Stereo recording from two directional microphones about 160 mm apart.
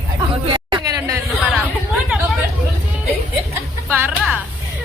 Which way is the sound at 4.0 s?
10° right (ahead or behind).